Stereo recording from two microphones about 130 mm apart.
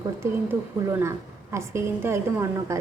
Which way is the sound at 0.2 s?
20° right (ahead or behind).